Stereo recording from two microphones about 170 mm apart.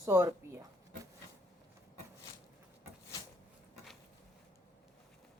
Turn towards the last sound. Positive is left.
turn(degrees=0)  # may be behind; listen again after turning